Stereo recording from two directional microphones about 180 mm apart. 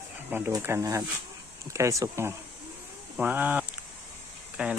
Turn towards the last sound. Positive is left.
turn(degrees=-5)  # may be behind; listen again after turning